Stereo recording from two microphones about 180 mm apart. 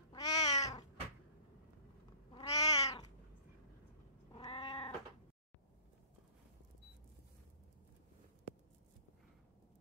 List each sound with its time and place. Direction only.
0.1 s cat: 20° left (ahead or behind)
2.3 s cat: 20° left (ahead or behind)
2.8 s cat: 35° left (ahead or behind)
4.3 s cat: 25° left (ahead or behind)